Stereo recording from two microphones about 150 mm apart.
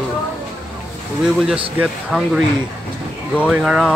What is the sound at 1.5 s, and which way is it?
Speech, 5° right (ahead or behind).